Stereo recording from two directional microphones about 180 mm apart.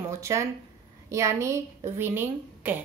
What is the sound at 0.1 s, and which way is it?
A woman's voice, 15° right (ahead or behind).